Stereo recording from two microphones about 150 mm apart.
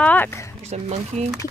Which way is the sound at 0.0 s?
10° left (ahead or behind).